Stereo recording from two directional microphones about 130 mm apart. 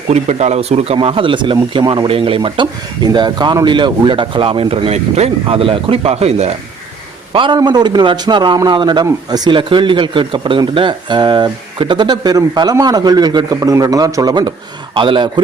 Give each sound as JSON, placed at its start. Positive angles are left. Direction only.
{"t": 0.1, "sound": "speech", "side_deg": -60}
{"t": 0.9, "sound": "speech", "side_deg": -40}
{"t": 7.3, "sound": "speech", "side_deg": -35}